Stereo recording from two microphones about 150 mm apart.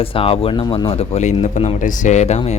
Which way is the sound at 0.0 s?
40° left (ahead or behind).